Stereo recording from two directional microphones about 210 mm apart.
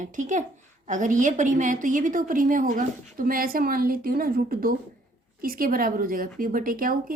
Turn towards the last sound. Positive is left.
turn(degrees=-40)  # may be behind; listen again after turning